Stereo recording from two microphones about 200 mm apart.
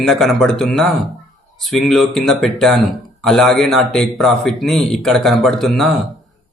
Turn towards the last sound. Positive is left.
turn(degrees=0)  # may be behind; listen again after turning